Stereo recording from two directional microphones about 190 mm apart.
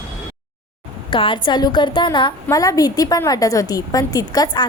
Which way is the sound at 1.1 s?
25° left (ahead or behind).